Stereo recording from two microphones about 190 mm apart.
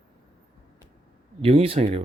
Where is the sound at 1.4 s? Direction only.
30° right (ahead or behind).